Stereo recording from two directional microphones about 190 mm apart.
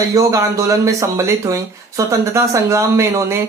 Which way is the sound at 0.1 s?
15° right (ahead or behind).